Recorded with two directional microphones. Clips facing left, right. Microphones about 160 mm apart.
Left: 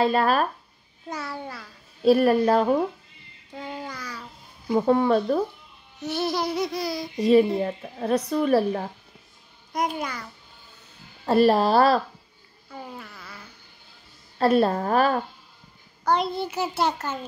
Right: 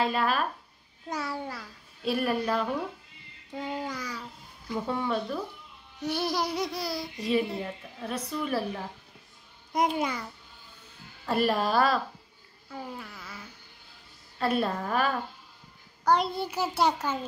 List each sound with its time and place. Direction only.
0.0 s a woman's voice: 40° left (ahead or behind)
1.1 s music: 15° right (ahead or behind)
2.0 s a woman's voice: 40° left (ahead or behind)
3.5 s a child's voice: 15° right (ahead or behind)
4.7 s speech: 50° left (ahead or behind)
6.0 s music: 10° right (ahead or behind)
6.8 s speech: 15° left (ahead or behind)
7.2 s a woman's voice: 40° left (ahead or behind)
11.2 s a woman's voice: 35° left (ahead or behind)
12.7 s a sound: centre (ahead or behind)
14.4 s a woman's voice: 40° left (ahead or behind)
16.1 s music: 10° right (ahead or behind)